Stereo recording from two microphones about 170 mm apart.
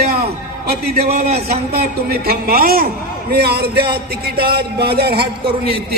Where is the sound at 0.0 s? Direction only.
65° right (ahead or behind).